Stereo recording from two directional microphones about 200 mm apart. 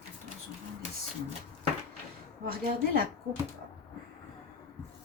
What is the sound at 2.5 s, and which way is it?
Speech, 45° right (ahead or behind).